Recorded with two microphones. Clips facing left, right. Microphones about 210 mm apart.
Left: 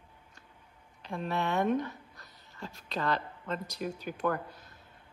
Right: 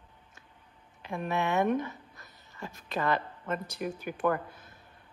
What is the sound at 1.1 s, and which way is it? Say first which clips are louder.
A woman's voice: right 2 dB; 15° right (ahead or behind).